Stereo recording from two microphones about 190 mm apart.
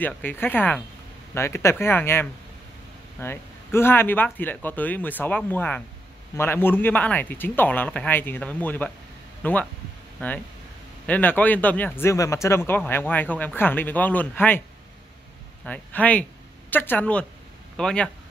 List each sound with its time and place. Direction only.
0.0 s speech: 10° left (ahead or behind)
11.1 s speech: 10° left (ahead or behind)
15.6 s speech: 10° left (ahead or behind)